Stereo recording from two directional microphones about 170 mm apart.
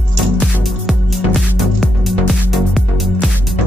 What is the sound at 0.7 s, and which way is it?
Music, centre (ahead or behind).